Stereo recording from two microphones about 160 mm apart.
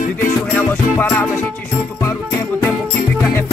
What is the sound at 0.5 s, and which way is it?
Speech, 10° left (ahead or behind).